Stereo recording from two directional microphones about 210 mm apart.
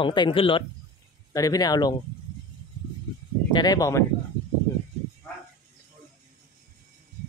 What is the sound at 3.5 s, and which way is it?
Speech, 20° left (ahead or behind).